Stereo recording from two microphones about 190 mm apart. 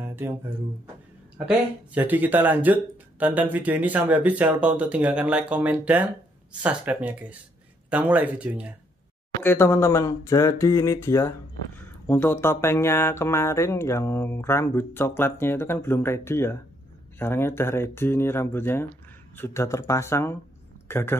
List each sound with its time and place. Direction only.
0.0 s a sound: 10° right (ahead or behind)
1.4 s speech: 10° right (ahead or behind)
9.4 s speech: 10° left (ahead or behind)